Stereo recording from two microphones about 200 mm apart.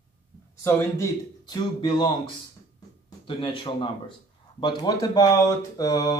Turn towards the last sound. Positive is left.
turn(degrees=15)  # may be behind; listen again after turning